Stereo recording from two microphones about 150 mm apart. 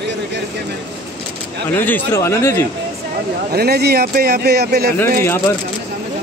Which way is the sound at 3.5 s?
90° right.